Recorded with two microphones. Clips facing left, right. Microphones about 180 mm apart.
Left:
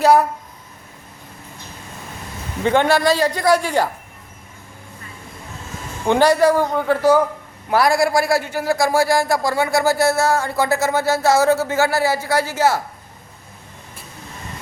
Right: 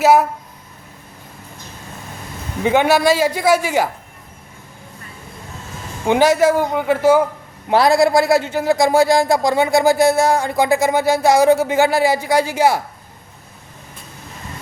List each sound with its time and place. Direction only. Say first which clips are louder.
0.0 s speech: right 1 dB; 5° right (ahead or behind)
2.6 s speech: right 2 dB; 10° right (ahead or behind)
6.1 s speech: right 1 dB; 10° right (ahead or behind)
7.7 s speech: right 3 dB; 25° right (ahead or behind)